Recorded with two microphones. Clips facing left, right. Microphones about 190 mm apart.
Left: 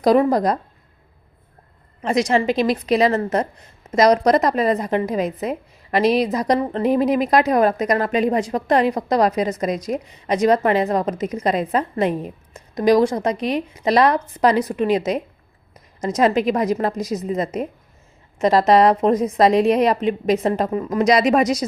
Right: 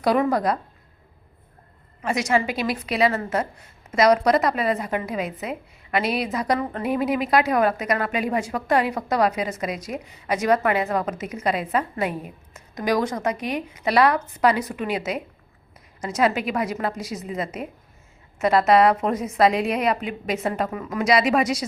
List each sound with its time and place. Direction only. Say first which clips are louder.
0.0 s a woman's voice: left 5 dB; 40° left (ahead or behind)
2.0 s a woman's voice: left 4 dB; 35° left (ahead or behind)